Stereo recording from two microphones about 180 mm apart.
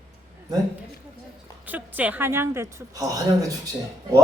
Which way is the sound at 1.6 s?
10° right (ahead or behind).